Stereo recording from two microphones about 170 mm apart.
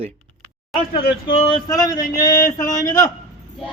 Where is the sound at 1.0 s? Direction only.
30° left (ahead or behind).